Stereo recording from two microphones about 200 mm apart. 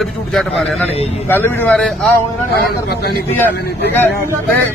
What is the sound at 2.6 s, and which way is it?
Speech, 55° left (ahead or behind).